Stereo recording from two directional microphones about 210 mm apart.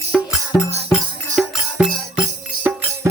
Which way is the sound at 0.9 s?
Centre (ahead or behind).